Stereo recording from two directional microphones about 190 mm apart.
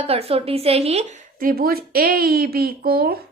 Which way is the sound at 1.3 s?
50° right (ahead or behind).